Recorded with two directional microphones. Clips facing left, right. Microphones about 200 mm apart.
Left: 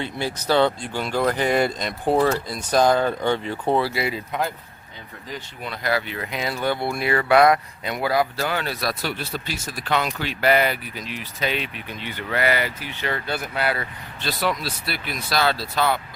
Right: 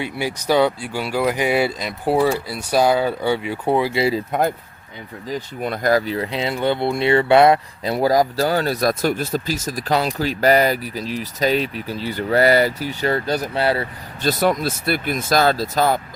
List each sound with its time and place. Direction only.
0.0 s speech: 15° right (ahead or behind)
3.9 s speech: 30° right (ahead or behind)
4.3 s speech: 50° right (ahead or behind)
5.5 s speech: 50° right (ahead or behind); by 13.8 s 30° right (ahead or behind)
14.2 s speech: 45° right (ahead or behind)